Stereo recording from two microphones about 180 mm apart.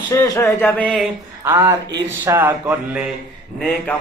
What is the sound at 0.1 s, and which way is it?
Speech, 20° left (ahead or behind).